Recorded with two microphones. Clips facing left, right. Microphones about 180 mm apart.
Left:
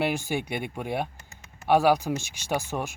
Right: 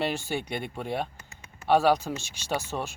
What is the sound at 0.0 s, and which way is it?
Speech, 15° left (ahead or behind).